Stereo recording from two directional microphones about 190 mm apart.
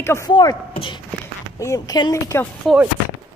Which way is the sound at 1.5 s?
15° left (ahead or behind).